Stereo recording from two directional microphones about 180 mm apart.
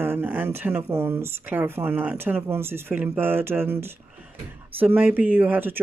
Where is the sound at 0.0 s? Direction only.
10° right (ahead or behind).